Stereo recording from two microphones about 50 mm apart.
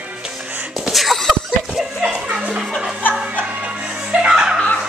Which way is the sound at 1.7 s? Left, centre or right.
Centre.